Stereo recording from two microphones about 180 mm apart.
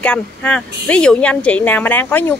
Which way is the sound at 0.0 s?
5° left (ahead or behind).